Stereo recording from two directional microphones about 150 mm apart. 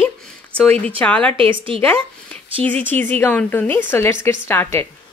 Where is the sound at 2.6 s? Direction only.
10° left (ahead or behind).